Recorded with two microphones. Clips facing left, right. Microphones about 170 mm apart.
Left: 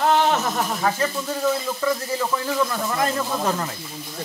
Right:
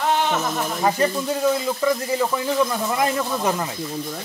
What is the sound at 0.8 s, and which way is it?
Speech, 15° right (ahead or behind).